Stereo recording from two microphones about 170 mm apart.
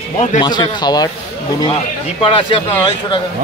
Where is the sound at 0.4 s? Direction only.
25° left (ahead or behind).